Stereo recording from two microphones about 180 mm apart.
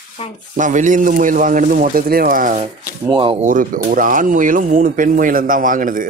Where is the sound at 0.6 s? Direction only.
45° right (ahead or behind).